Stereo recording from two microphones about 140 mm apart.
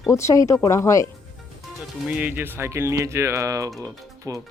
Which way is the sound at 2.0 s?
10° right (ahead or behind).